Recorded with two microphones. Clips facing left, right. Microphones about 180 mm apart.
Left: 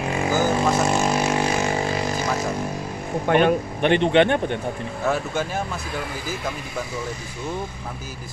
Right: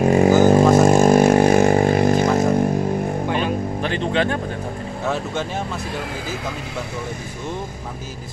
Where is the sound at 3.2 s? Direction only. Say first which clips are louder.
Left 4 dB; 60° left (ahead or behind).